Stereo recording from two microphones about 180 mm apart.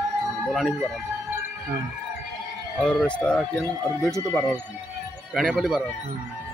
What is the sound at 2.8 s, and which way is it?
Speech, 5° left (ahead or behind).